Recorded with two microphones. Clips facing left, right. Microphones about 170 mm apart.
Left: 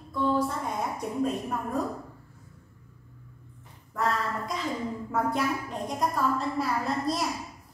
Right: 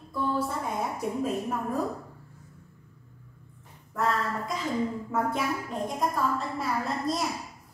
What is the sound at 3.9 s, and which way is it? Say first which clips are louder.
A woman's voice: right 1 dB; centre (ahead or behind).